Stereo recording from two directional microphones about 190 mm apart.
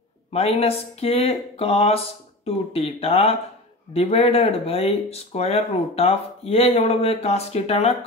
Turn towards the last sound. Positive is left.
turn(degrees=30)  # may be behind; listen again after turning